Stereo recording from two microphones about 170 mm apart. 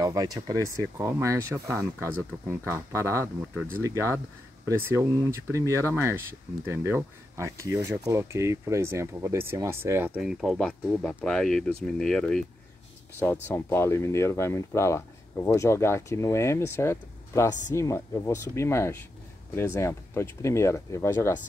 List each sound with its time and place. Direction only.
0.0 s speech: 20° right (ahead or behind); by 21.3 s 15° left (ahead or behind)